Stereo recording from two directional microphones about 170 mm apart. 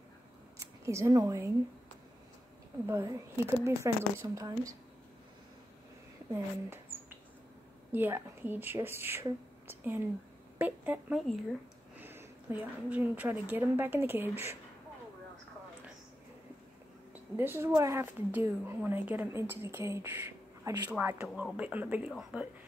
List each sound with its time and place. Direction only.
0.6 s speech: 15° right (ahead or behind)
2.9 s speech: 15° right (ahead or behind)
6.3 s speech: 15° right (ahead or behind)
17.1 s speech: 10° right (ahead or behind)
21.3 s speech: centre (ahead or behind)
21.5 s speech: 10° right (ahead or behind)